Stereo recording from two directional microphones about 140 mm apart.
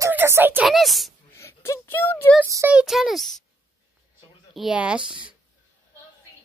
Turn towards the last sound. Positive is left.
turn(degrees=-5)  # may be behind; listen again after turning